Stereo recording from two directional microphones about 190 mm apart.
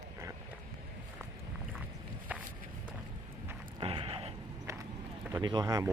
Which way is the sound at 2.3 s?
10° right (ahead or behind).